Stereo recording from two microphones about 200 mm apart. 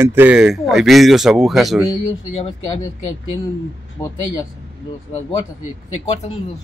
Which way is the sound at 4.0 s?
10° left (ahead or behind).